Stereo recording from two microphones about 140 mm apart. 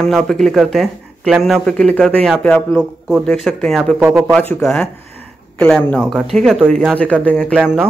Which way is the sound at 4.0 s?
15° right (ahead or behind).